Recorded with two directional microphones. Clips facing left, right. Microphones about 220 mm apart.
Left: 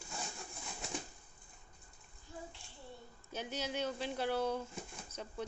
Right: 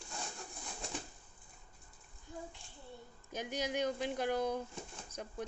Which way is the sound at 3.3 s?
10° right (ahead or behind).